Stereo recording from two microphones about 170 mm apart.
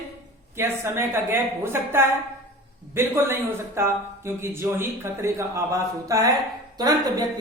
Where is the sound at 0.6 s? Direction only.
15° right (ahead or behind).